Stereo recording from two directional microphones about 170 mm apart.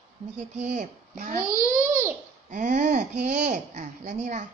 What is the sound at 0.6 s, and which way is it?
Speech, 45° right (ahead or behind).